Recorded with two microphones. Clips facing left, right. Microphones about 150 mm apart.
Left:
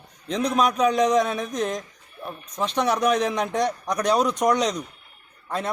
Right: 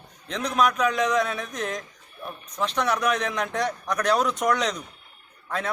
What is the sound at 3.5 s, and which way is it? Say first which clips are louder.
Speech: left 3 dB; 15° left (ahead or behind).